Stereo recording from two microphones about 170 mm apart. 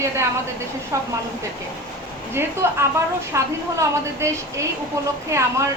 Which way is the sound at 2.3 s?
15° right (ahead or behind).